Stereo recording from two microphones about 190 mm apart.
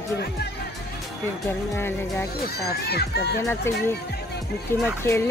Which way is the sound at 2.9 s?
60° left (ahead or behind).